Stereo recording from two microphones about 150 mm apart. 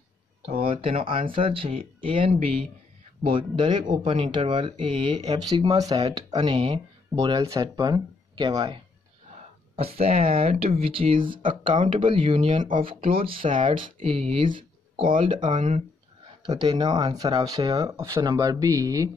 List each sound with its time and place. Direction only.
0.7 s speech: 40° right (ahead or behind)
5.5 s speech: 25° right (ahead or behind)
9.8 s speech: 40° right (ahead or behind)
15.5 s speech: 55° right (ahead or behind)
16.4 s speech: 30° right (ahead or behind)